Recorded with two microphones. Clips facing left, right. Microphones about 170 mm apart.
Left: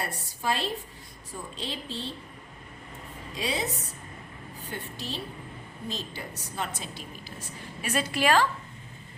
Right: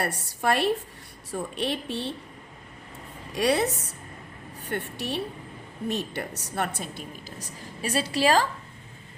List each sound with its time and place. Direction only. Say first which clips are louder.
0.0 s a woman's voice: right 5 dB; 65° right (ahead or behind)
3.3 s a woman's voice: right 8 dB; 70° right (ahead or behind); by 8.4 s 35° right (ahead or behind)